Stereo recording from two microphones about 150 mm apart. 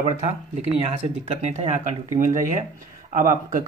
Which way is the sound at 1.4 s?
45° right (ahead or behind).